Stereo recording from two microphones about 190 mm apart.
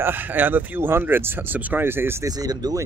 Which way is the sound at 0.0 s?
10° right (ahead or behind).